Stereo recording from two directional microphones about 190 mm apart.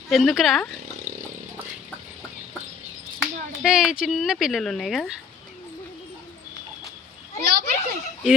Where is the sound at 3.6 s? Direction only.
5° right (ahead or behind).